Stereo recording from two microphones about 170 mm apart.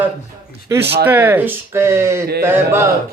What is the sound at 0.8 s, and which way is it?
Speech, 80° right.